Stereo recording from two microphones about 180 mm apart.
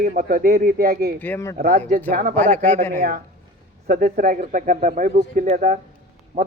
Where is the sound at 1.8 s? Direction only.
45° right (ahead or behind).